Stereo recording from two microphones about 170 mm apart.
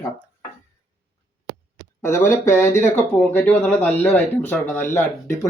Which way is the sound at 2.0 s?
15° left (ahead or behind).